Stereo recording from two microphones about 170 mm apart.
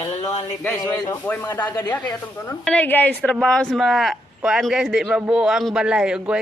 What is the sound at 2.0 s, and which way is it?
A man's voice, 5° left (ahead or behind).